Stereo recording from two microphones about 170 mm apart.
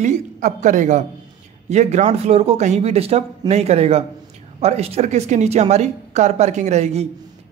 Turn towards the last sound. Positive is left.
turn(degrees=-40)  # may be behind; listen again after turning